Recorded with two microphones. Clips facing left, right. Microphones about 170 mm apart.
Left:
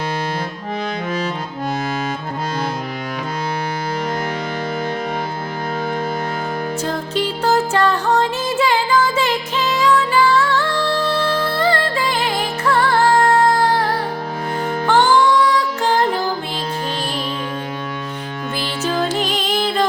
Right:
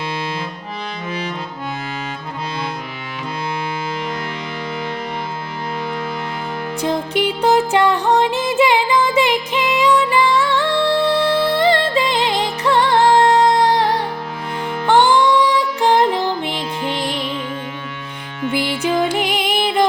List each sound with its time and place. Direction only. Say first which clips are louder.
6.8 s music: right 6 dB; 15° right (ahead or behind)
14.8 s music: right 1 dB; 15° right (ahead or behind)
18.5 s music: right 3 dB; 15° right (ahead or behind)